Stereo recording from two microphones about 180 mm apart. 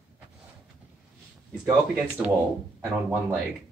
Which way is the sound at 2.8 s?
15° right (ahead or behind).